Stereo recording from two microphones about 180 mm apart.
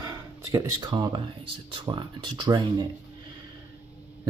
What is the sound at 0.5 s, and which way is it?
Speech, 20° right (ahead or behind).